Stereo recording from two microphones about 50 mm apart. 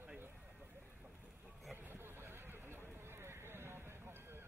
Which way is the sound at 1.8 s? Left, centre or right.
Right.